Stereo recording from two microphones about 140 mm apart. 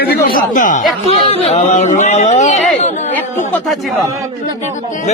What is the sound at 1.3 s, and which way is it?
Speech, 50° left (ahead or behind).